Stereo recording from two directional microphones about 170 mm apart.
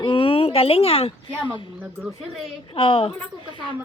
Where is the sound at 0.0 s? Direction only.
30° left (ahead or behind).